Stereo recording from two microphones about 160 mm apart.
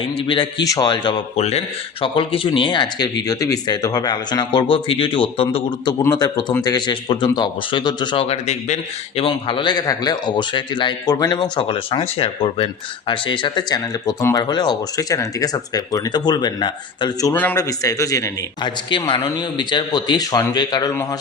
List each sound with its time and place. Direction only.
0.0 s a man's voice: 35° left (ahead or behind)
1.4 s speech: 40° left (ahead or behind)
6.0 s a man's voice: 20° left (ahead or behind)